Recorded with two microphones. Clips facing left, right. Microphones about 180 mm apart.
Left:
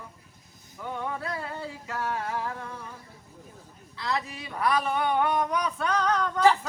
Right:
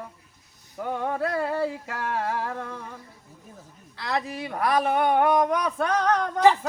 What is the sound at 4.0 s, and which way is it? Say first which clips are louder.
Speech: right 3 dB; 55° right (ahead or behind).